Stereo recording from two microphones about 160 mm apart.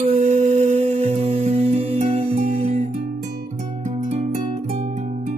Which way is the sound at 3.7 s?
50° right (ahead or behind).